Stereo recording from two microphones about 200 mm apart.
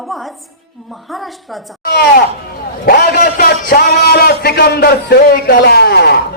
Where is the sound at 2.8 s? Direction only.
50° left (ahead or behind).